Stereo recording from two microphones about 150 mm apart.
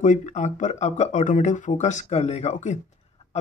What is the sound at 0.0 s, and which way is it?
Speech, 55° left (ahead or behind).